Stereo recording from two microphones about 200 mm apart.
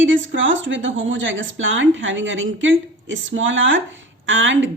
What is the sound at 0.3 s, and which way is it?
A woman's voice, 70° right (ahead or behind).